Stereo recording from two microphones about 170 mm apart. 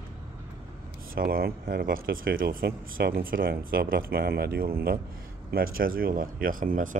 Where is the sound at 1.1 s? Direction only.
60° right (ahead or behind).